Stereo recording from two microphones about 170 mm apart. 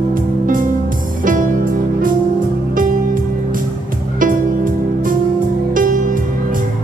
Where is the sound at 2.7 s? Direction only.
55° right (ahead or behind).